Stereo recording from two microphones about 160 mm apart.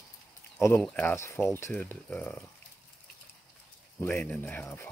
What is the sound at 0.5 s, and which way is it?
Speech, 15° left (ahead or behind).